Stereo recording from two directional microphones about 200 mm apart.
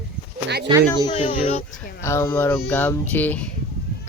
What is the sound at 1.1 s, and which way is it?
Speech, 30° left (ahead or behind).